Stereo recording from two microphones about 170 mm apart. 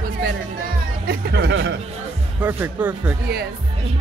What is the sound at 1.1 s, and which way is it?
Speech, 75° right (ahead or behind).